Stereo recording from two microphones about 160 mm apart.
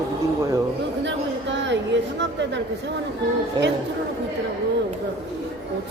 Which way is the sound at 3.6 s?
30° right (ahead or behind).